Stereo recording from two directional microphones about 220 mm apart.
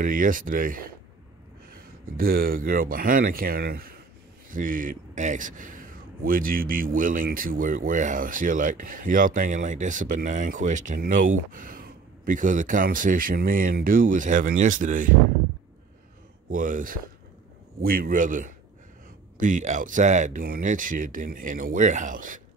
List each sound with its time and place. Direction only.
0.0 s a man's voice: 40° right (ahead or behind)
16.4 s a man's voice: 35° right (ahead or behind)